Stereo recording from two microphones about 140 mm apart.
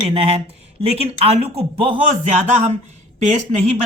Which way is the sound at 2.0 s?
55° right (ahead or behind).